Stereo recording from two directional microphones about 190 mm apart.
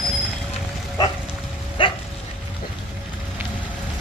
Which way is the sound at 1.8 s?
30° left (ahead or behind).